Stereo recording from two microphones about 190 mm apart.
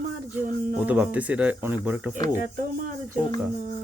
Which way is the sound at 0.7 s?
10° right (ahead or behind).